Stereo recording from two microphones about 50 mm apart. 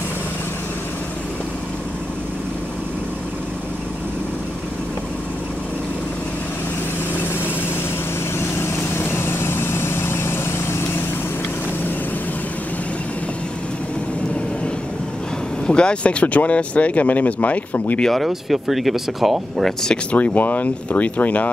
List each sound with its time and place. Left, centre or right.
8.4 s vehicle: left
15.6 s speech: centre
18.0 s speech: centre
20.1 s speech: left
20.3 s speech: left